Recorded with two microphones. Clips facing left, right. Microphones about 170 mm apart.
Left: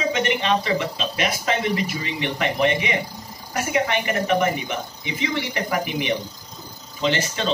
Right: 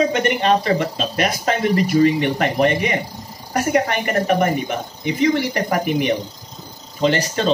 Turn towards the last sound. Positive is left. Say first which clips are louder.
# right 5 dB
turn(degrees=-45)  # may be behind; listen again after turning